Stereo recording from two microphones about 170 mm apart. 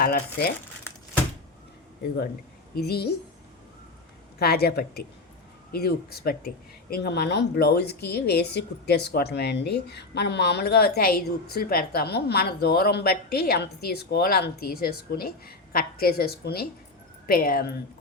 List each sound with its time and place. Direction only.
0.0 s speech: 65° left (ahead or behind)
2.7 s a woman's voice: 70° left (ahead or behind)
4.4 s a woman's voice: 65° left (ahead or behind)